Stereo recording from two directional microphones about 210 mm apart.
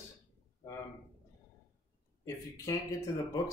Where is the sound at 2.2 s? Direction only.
15° left (ahead or behind).